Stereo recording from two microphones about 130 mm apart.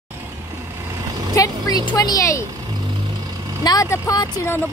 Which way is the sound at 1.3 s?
25° left (ahead or behind).